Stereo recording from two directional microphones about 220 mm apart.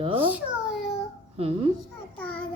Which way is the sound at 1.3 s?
25° right (ahead or behind).